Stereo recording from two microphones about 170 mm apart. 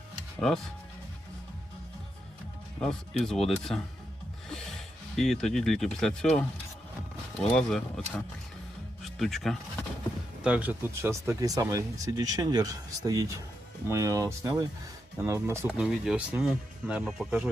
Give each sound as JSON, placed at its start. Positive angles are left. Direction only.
{"t": 0.3, "sound": "speech", "side_deg": 0}
{"t": 2.8, "sound": "speech", "side_deg": 0}
{"t": 15.8, "sound": "speech", "side_deg": -5}